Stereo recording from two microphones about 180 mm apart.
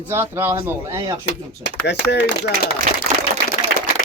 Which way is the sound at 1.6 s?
70° left (ahead or behind).